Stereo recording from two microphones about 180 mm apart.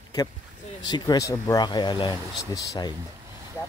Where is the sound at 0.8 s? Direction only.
25° left (ahead or behind).